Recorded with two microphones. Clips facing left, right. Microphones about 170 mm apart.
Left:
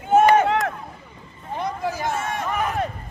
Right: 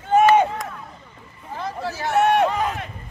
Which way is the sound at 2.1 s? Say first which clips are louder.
Right 10 dB; 70° right (ahead or behind).